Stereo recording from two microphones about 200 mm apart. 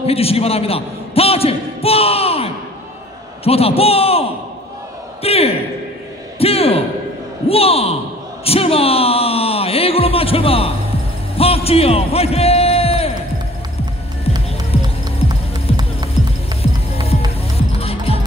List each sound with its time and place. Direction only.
0.0 s a man's voice: 30° left (ahead or behind)
8.5 s a sound: 30° left (ahead or behind)
15.7 s music: 30° left (ahead or behind)